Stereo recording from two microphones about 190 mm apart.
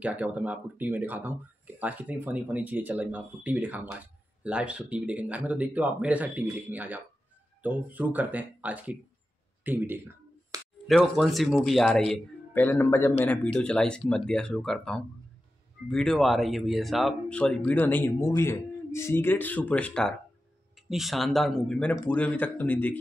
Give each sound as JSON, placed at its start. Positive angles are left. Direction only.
{"t": 0.0, "sound": "speech", "side_deg": -5}
{"t": 10.5, "sound": "a sound", "side_deg": -20}
{"t": 10.9, "sound": "speech", "side_deg": 0}